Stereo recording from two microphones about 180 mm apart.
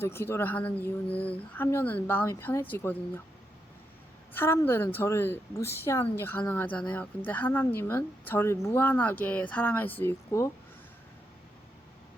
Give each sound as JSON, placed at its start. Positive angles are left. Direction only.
{"t": 0.0, "sound": "speech", "side_deg": 15}
{"t": 4.4, "sound": "speech", "side_deg": 10}